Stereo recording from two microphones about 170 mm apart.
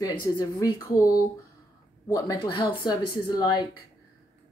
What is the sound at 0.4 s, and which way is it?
A woman's voice, 20° left (ahead or behind).